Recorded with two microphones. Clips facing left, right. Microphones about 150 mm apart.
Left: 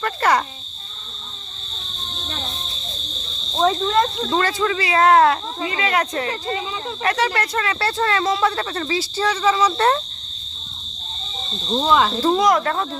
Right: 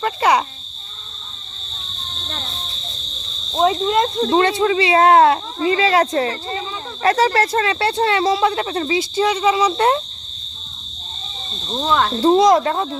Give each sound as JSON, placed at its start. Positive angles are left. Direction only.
{"t": 0.0, "sound": "speech", "side_deg": -15}
{"t": 3.6, "sound": "speech", "side_deg": -15}
{"t": 11.9, "sound": "speech", "side_deg": 5}
{"t": 12.2, "sound": "speech", "side_deg": -25}